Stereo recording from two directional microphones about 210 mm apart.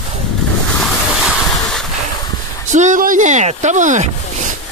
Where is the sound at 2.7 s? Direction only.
35° right (ahead or behind).